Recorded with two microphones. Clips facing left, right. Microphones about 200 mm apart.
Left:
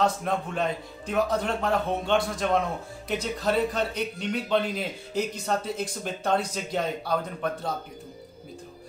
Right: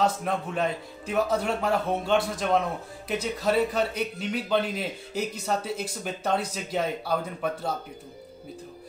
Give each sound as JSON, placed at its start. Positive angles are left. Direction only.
{"t": 0.0, "sound": "a man's voice", "side_deg": -5}